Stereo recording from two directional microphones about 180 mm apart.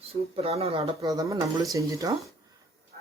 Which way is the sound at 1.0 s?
20° right (ahead or behind).